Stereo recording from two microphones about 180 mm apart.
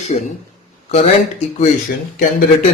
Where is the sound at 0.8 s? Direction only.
40° left (ahead or behind).